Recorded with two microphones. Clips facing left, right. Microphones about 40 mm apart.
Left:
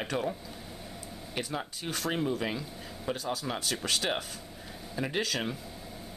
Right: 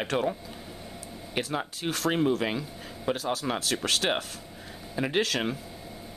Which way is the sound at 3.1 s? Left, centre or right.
Right.